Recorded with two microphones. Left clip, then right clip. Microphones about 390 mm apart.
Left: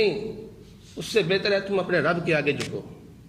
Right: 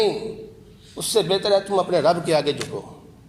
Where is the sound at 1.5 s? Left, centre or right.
Centre.